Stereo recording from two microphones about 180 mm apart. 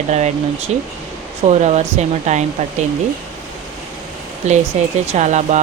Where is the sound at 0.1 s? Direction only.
40° right (ahead or behind).